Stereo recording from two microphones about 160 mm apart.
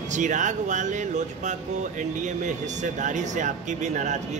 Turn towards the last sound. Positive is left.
turn(degrees=-45)  # may be behind; listen again after turning